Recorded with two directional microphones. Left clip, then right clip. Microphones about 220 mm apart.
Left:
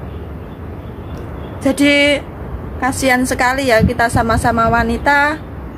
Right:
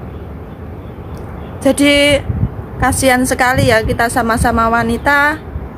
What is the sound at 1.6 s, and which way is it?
Speech, 15° right (ahead or behind).